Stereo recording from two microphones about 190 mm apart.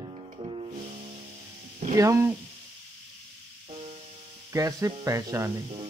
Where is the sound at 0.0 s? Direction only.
30° right (ahead or behind).